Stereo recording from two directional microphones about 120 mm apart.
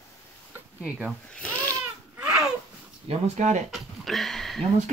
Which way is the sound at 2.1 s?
5° right (ahead or behind).